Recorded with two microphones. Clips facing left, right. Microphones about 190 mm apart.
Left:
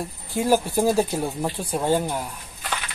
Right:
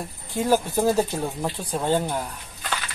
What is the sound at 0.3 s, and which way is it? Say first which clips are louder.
Speech: left 1 dB; 10° left (ahead or behind).